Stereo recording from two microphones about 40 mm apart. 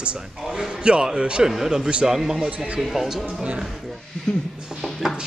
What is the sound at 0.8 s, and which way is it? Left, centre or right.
Speech, right.